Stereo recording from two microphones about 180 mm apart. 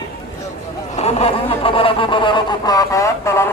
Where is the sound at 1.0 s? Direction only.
35° left (ahead or behind).